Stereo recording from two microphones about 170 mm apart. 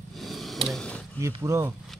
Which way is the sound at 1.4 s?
15° right (ahead or behind).